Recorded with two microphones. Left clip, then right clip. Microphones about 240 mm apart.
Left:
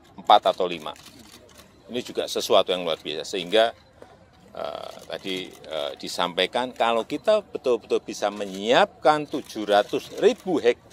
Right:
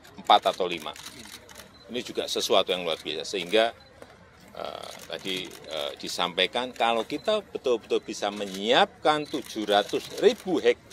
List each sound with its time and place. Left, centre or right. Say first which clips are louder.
0.3 s speech: left 3 dB; left